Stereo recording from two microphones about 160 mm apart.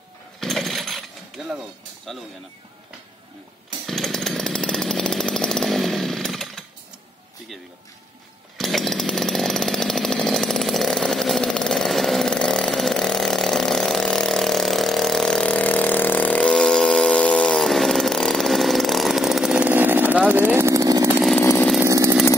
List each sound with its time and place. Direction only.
0.4 s jackhammer: centre (ahead or behind)
2.1 s speech: centre (ahead or behind)
3.8 s chainsaw: centre (ahead or behind)
8.5 s chainsaw: centre (ahead or behind); by 21.2 s 20° right (ahead or behind)
21.4 s chainsaw: 15° left (ahead or behind)
21.8 s chainsaw: 20° right (ahead or behind)